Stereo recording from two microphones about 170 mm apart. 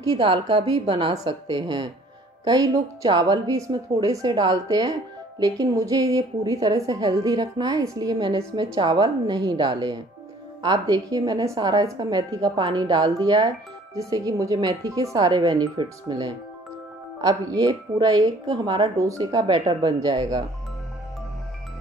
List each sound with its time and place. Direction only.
0.0 s a woman's voice: 25° right (ahead or behind)